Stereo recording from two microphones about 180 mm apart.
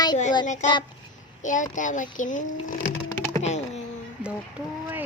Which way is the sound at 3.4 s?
40° left (ahead or behind).